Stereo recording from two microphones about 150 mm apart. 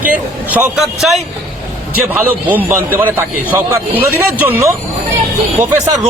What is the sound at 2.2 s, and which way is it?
A man's voice, 10° right (ahead or behind).